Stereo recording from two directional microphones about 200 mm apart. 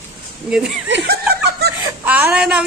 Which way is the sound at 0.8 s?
60° right (ahead or behind).